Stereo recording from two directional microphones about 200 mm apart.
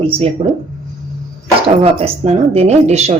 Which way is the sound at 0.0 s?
30° right (ahead or behind).